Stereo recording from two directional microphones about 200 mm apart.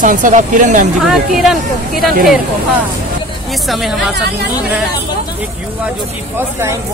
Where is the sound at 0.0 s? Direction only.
40° right (ahead or behind).